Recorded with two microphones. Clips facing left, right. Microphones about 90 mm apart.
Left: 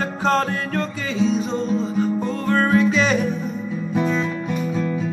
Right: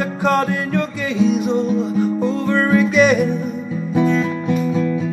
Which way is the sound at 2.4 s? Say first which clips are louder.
Even; 45° left (ahead or behind).